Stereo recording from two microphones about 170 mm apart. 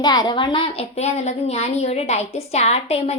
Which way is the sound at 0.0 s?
25° left (ahead or behind).